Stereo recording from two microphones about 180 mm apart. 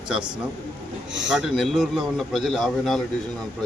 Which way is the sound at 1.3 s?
Centre (ahead or behind).